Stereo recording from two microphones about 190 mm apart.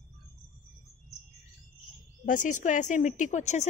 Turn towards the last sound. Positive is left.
turn(degrees=35)  # may be behind; listen again after turning